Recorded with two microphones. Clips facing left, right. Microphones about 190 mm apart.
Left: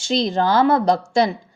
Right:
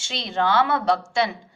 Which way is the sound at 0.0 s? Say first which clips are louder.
Left 6 dB; 40° left (ahead or behind).